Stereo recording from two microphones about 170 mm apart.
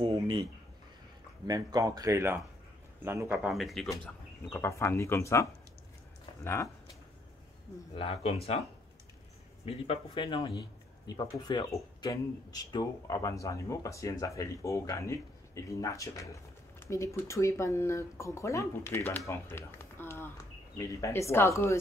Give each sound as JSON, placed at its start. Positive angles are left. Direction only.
{"t": 0.0, "sound": "a sound", "side_deg": -30}
{"t": 1.5, "sound": "a man's voice", "side_deg": -20}
{"t": 3.4, "sound": "speech", "side_deg": 0}
{"t": 4.5, "sound": "speech", "side_deg": 15}
{"t": 7.9, "sound": "speech", "side_deg": 30}
{"t": 9.7, "sound": "speech", "side_deg": 30}